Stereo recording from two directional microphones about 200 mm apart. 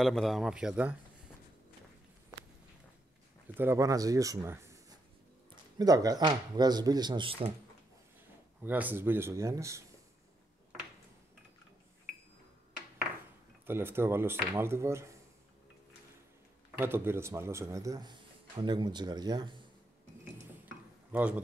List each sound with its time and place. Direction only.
0.0 s a man's voice: centre (ahead or behind)
3.5 s speech: 15° right (ahead or behind)
8.6 s a man's voice: 10° right (ahead or behind)
13.7 s a man's voice: 10° right (ahead or behind)
16.7 s a man's voice: 10° right (ahead or behind)
21.1 s a man's voice: 5° right (ahead or behind)